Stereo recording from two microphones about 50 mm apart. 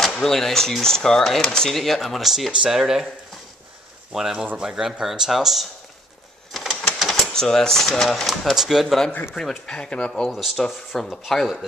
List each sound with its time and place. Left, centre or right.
0.0 s speech: centre
4.1 s speech: centre
6.5 s printer: centre
7.3 s speech: centre
8.5 s speech: centre
9.7 s speech: centre
10.3 s speech: centre